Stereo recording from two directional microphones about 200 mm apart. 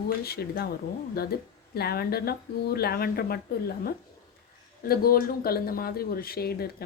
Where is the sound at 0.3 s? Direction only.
50° left (ahead or behind).